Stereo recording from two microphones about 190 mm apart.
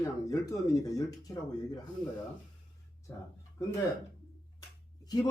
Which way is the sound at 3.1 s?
10° left (ahead or behind).